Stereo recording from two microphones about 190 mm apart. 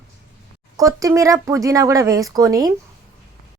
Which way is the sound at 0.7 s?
15° right (ahead or behind).